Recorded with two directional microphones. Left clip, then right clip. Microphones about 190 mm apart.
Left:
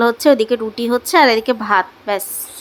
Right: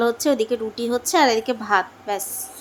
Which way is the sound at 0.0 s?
25° left (ahead or behind).